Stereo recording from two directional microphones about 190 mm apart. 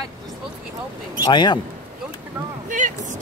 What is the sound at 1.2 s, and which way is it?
Speech, 25° left (ahead or behind).